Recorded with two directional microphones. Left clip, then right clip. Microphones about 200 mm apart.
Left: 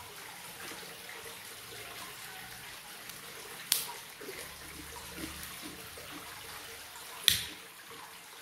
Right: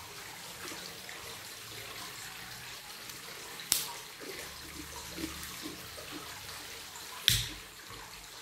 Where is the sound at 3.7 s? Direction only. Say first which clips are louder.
Even; 10° left (ahead or behind).